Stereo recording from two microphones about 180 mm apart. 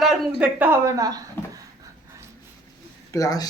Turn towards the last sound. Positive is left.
turn(degrees=20)  # may be behind; listen again after turning